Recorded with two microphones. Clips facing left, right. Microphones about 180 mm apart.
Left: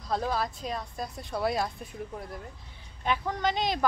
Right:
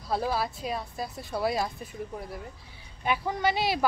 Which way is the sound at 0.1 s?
5° right (ahead or behind).